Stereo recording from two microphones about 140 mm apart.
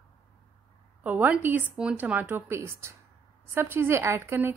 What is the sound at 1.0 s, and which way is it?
A woman's voice, 10° right (ahead or behind).